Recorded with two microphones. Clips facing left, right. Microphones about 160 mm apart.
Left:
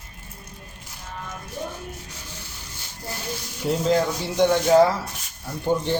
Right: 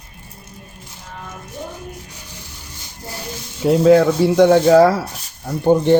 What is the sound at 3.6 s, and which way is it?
Speech, 65° right (ahead or behind).